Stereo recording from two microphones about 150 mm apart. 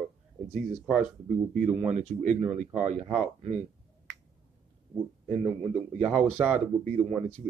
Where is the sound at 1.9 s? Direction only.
50° right (ahead or behind).